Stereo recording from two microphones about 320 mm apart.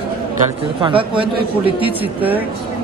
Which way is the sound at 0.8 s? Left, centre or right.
Centre.